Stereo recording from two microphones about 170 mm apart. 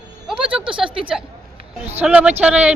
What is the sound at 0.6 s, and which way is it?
Speech, 30° right (ahead or behind).